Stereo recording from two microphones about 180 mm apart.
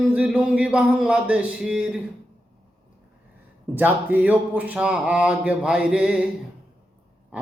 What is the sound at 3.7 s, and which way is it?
Speech, 10° right (ahead or behind).